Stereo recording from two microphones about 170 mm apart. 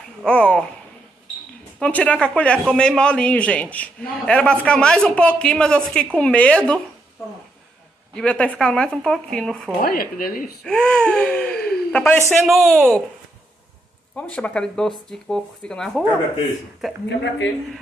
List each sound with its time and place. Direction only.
0.2 s speech: 5° left (ahead or behind)
1.8 s a man's voice: 10° left (ahead or behind)
8.1 s speech: 5° left (ahead or behind)
9.8 s speech: 60° left (ahead or behind)
10.6 s speech: 5° left (ahead or behind)
14.1 s speech: 5° left (ahead or behind)